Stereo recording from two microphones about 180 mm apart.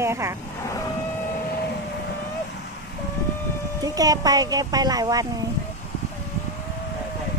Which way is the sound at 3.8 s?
20° right (ahead or behind).